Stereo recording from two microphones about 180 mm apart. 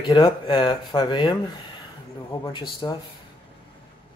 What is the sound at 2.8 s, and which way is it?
Speech, 25° left (ahead or behind).